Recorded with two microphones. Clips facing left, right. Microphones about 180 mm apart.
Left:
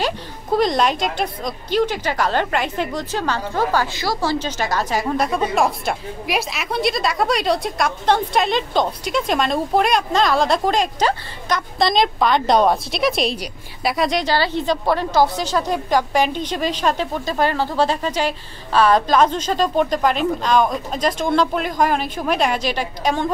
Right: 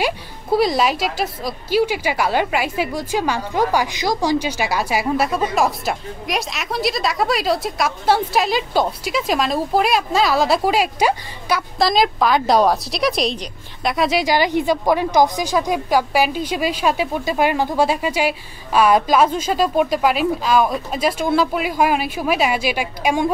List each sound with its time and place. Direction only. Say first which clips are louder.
0.0 s a woman's voice: right 1 dB; 10° right (ahead or behind)